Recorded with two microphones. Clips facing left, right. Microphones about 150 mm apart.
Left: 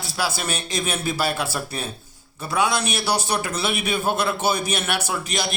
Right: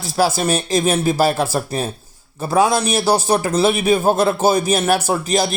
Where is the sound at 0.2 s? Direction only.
40° right (ahead or behind).